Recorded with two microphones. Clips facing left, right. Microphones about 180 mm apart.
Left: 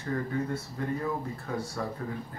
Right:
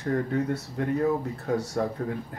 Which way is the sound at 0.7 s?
65° right (ahead or behind).